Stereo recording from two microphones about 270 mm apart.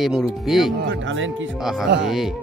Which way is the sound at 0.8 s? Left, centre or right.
Right.